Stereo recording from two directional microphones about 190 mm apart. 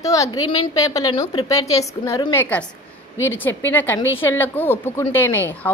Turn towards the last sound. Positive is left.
turn(degrees=10)  # may be behind; listen again after turning